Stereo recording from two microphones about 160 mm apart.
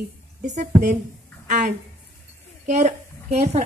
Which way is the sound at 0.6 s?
50° right (ahead or behind).